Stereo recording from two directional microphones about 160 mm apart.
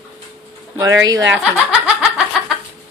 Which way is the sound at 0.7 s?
25° right (ahead or behind).